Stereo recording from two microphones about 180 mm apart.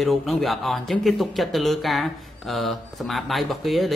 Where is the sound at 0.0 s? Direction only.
Centre (ahead or behind).